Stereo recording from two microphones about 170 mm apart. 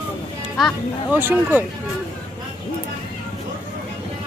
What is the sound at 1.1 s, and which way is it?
Speech, 10° right (ahead or behind).